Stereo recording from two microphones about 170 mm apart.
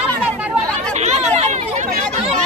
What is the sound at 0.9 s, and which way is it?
Speech, 40° right (ahead or behind).